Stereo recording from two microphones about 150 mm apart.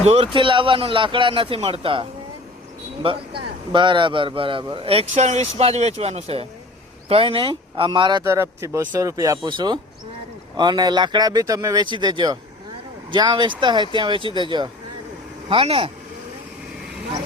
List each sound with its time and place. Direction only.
0.0 s a man's voice: 45° right (ahead or behind)
8.2 s a man's voice: 20° right (ahead or behind); by 15.9 s 40° right (ahead or behind)